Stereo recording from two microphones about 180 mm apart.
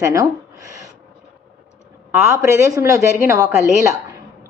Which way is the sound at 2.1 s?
10° right (ahead or behind).